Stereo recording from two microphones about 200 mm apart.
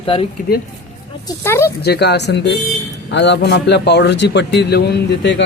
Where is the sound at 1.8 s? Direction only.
55° left (ahead or behind).